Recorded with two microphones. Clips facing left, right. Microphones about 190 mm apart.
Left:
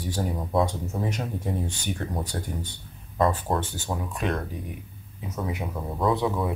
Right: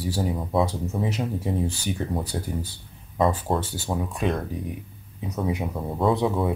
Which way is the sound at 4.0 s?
25° right (ahead or behind).